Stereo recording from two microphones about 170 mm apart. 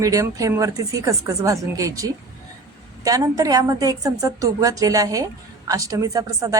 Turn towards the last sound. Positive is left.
turn(degrees=-20)  # may be behind; listen again after turning